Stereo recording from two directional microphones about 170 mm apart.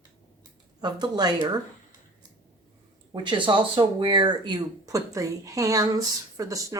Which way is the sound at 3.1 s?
30° right (ahead or behind).